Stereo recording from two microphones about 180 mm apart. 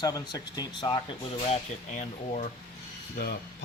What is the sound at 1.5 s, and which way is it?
Speech, 40° left (ahead or behind).